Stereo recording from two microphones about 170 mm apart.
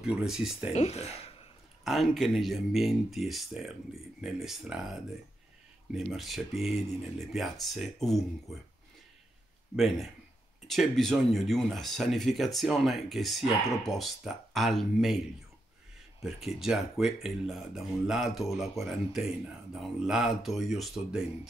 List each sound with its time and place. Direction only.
0.0 s speech: 5° right (ahead or behind)
0.7 s speech: 40° left (ahead or behind)
1.9 s speech: centre (ahead or behind)
9.8 s speech: centre (ahead or behind)
16.2 s speech: centre (ahead or behind)